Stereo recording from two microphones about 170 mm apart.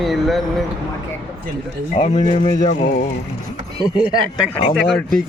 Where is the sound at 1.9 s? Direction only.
40° left (ahead or behind).